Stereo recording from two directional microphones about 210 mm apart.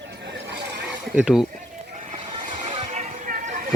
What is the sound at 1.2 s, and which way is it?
Speech, 5° right (ahead or behind).